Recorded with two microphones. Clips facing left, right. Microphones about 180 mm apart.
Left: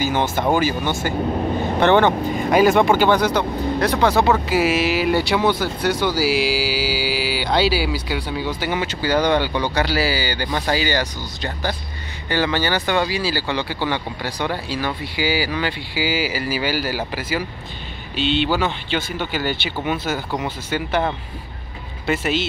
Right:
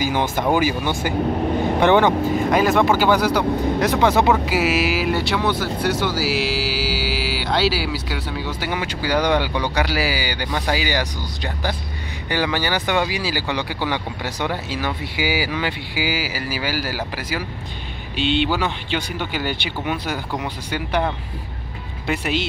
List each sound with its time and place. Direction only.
0.0 s speech: 10° right (ahead or behind)
2.5 s speech: centre (ahead or behind); by 4.4 s 15° right (ahead or behind)
4.5 s speech: 5° right (ahead or behind)
18.1 s speech: 55° right (ahead or behind)
18.5 s speech: 10° right (ahead or behind)
22.0 s speech: centre (ahead or behind)